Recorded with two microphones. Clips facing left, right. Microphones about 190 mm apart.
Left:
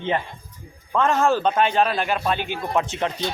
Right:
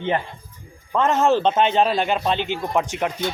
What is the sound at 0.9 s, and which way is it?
A man's voice, 20° right (ahead or behind).